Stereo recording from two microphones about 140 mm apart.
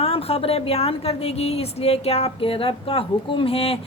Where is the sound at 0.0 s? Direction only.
45° left (ahead or behind).